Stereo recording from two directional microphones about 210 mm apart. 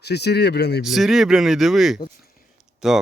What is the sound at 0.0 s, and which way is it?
Speech, 50° left (ahead or behind).